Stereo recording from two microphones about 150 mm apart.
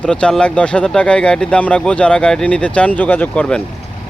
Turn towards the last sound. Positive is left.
turn(degrees=10)  # may be behind; listen again after turning